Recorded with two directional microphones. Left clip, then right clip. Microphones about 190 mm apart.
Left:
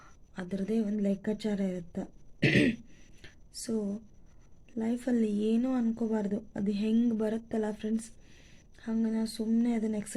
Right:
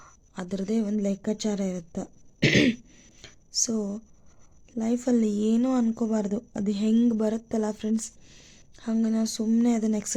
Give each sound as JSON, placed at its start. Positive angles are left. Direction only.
{"t": 0.0, "sound": "a woman's voice", "side_deg": -25}
{"t": 3.2, "sound": "a sound", "side_deg": -25}
{"t": 4.8, "sound": "speech", "side_deg": -25}